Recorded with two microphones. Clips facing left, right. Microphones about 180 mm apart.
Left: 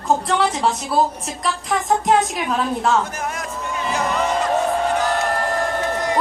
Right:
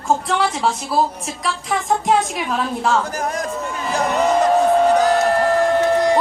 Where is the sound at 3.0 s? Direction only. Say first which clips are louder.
Right 4 dB; 35° right (ahead or behind).